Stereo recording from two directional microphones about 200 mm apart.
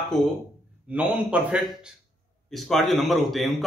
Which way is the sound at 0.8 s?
5° right (ahead or behind).